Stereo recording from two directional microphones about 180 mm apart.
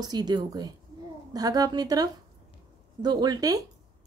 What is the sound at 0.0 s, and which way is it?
A woman's voice, 20° right (ahead or behind).